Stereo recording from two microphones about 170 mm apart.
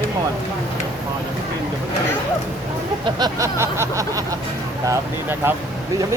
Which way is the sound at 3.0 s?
20° right (ahead or behind).